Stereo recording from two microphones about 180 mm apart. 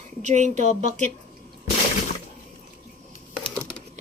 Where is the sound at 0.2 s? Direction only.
40° right (ahead or behind).